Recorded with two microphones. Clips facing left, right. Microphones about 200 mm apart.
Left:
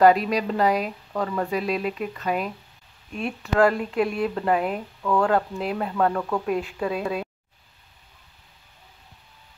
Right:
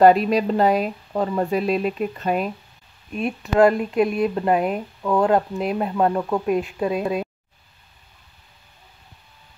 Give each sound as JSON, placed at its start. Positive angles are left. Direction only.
{"t": 0.0, "sound": "speech", "side_deg": -25}